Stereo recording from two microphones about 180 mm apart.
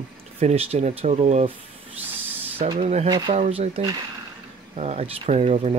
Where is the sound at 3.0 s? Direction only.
25° right (ahead or behind).